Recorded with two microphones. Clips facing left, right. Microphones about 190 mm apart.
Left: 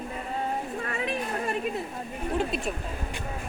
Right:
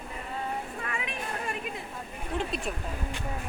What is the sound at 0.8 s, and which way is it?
Chatter, 35° left (ahead or behind).